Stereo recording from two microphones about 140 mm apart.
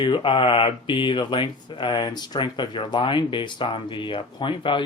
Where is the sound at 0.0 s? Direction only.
35° left (ahead or behind).